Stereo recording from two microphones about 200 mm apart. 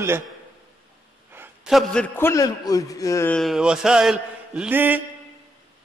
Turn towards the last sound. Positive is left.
turn(degrees=-10)  # may be behind; listen again after turning